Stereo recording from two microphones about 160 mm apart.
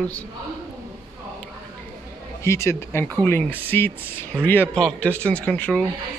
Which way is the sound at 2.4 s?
15° left (ahead or behind).